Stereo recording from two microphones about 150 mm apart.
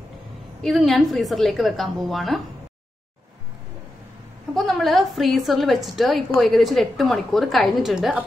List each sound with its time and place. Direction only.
0.6 s a woman's voice: centre (ahead or behind)
4.6 s a woman's voice: centre (ahead or behind)